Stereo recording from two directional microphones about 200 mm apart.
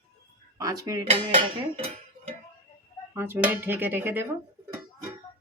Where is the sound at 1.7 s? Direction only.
30° right (ahead or behind).